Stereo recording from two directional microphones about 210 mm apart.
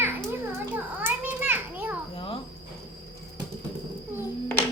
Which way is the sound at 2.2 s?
25° left (ahead or behind).